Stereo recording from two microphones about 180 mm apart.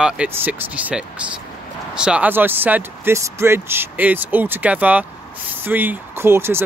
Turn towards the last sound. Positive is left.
turn(degrees=-15)  # may be behind; listen again after turning